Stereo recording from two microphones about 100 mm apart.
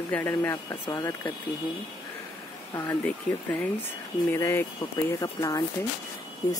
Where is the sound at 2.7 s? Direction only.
25° left (ahead or behind).